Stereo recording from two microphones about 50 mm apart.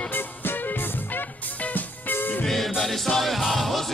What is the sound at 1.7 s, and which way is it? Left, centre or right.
Music, left.